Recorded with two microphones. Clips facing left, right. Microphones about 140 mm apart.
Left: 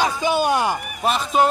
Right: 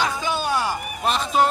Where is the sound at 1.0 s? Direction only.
Centre (ahead or behind).